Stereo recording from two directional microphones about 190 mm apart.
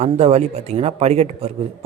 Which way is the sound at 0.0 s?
35° right (ahead or behind).